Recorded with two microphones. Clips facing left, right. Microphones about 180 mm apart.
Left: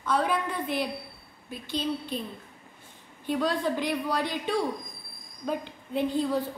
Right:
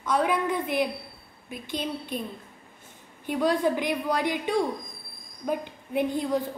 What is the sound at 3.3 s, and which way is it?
A woman's voice, 15° right (ahead or behind).